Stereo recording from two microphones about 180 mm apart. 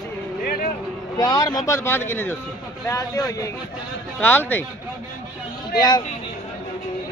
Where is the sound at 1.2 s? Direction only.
20° left (ahead or behind).